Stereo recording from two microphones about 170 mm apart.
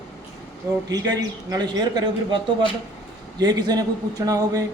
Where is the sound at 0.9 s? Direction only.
20° right (ahead or behind).